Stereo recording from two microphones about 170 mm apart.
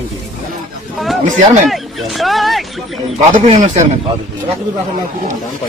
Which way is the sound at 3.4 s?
40° right (ahead or behind).